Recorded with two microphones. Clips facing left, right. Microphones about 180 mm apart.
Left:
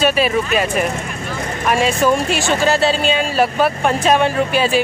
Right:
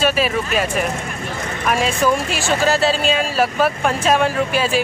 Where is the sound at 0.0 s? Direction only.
Centre (ahead or behind).